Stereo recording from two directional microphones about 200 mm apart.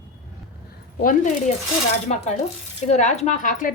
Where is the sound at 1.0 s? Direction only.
45° left (ahead or behind).